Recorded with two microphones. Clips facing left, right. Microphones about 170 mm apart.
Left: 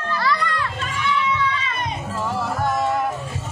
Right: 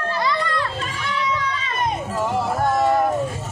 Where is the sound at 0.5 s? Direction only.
40° right (ahead or behind).